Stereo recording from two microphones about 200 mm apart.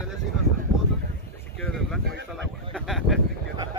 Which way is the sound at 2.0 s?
55° right (ahead or behind).